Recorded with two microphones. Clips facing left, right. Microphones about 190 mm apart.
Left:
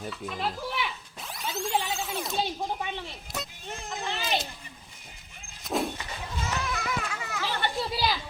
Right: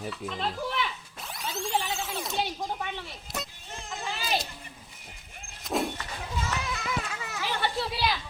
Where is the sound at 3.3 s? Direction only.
Centre (ahead or behind).